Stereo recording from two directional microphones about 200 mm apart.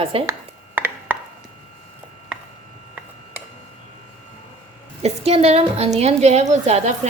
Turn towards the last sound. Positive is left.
turn(degrees=-35)  # may be behind; listen again after turning